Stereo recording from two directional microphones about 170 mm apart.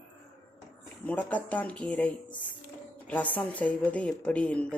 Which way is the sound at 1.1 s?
10° left (ahead or behind).